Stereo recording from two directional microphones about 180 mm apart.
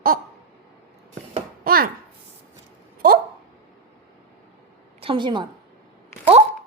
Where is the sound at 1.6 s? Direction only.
55° right (ahead or behind).